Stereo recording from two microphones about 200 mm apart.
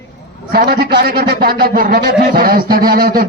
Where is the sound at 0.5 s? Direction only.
50° right (ahead or behind).